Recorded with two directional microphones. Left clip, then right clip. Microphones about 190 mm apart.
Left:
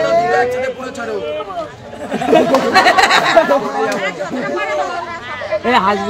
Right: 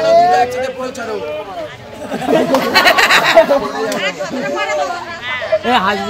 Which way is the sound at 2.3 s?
5° left (ahead or behind).